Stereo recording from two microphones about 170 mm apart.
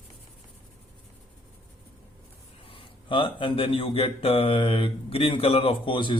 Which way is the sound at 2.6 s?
30° left (ahead or behind).